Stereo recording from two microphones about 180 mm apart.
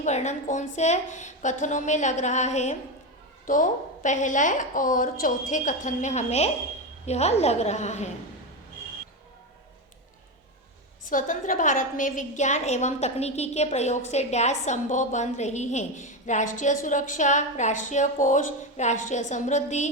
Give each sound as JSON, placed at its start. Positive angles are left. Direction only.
{"t": 0.0, "sound": "a woman's voice", "side_deg": 40}
{"t": 11.0, "sound": "a woman's voice", "side_deg": 45}